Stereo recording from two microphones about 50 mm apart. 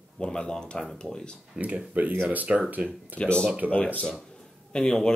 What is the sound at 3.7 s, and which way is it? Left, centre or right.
Speech, left.